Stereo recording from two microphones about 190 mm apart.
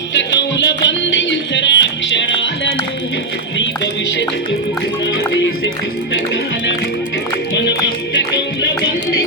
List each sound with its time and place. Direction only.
0.1 s music: 70° left (ahead or behind)
8.1 s music: 70° left (ahead or behind)